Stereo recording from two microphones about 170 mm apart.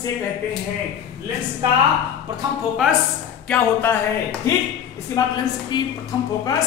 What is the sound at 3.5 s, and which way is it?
Speech, 15° left (ahead or behind).